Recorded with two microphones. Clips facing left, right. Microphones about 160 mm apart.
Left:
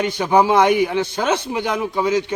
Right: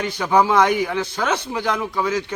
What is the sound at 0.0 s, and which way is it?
Speech, 20° left (ahead or behind).